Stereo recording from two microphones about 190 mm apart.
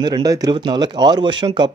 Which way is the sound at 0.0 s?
20° right (ahead or behind).